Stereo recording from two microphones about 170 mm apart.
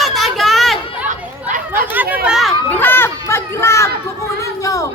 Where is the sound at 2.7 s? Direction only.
10° left (ahead or behind).